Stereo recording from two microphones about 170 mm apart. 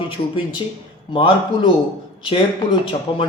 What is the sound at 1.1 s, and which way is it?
Speech, 30° left (ahead or behind).